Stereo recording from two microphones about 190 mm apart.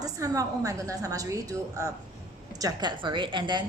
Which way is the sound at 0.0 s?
15° right (ahead or behind).